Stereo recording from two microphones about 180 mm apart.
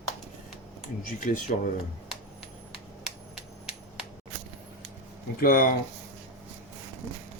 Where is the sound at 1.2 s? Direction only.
45° left (ahead or behind).